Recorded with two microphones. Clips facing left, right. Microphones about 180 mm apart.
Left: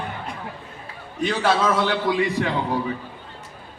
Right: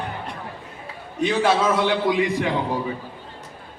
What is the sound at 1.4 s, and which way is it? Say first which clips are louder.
A man's voice: right 1 dB; 15° right (ahead or behind).